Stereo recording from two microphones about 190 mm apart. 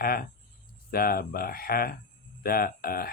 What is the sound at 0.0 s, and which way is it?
Speech, 50° left (ahead or behind).